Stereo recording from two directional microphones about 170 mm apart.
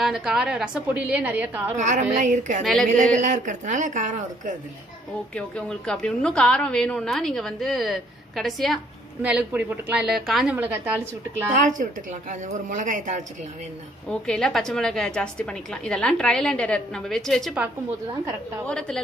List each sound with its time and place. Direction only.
0.0 s a woman's voice: 5° right (ahead or behind)
1.8 s speech: 45° right (ahead or behind)
2.6 s a woman's voice: centre (ahead or behind)
3.2 s speech: 45° right (ahead or behind)
5.3 s a woman's voice: 5° left (ahead or behind)
11.5 s speech: 50° right (ahead or behind)
14.0 s a woman's voice: 5° left (ahead or behind)
18.7 s a woman's voice: 5° left (ahead or behind)